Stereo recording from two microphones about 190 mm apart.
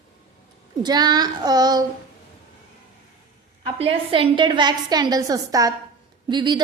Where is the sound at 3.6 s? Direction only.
30° right (ahead or behind).